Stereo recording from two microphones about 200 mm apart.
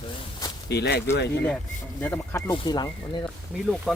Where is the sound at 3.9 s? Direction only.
Centre (ahead or behind).